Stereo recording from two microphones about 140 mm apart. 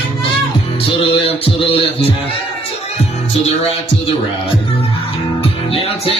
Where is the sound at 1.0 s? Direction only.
45° left (ahead or behind).